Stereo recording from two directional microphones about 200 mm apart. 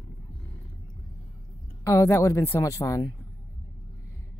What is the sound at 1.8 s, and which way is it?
Speech, 15° left (ahead or behind).